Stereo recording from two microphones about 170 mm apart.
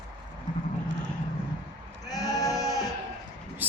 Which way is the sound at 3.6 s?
10° right (ahead or behind).